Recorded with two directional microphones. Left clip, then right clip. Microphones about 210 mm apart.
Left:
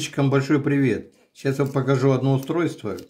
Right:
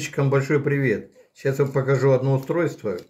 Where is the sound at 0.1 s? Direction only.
50° left (ahead or behind).